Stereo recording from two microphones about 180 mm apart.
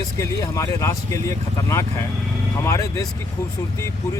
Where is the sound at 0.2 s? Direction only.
15° left (ahead or behind).